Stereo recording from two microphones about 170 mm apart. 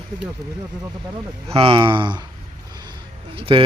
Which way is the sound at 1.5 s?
35° right (ahead or behind).